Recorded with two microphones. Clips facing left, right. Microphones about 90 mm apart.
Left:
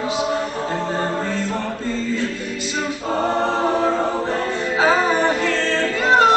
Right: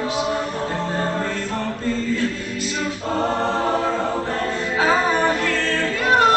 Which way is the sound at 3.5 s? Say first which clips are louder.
Left 2 dB; 15° left (ahead or behind).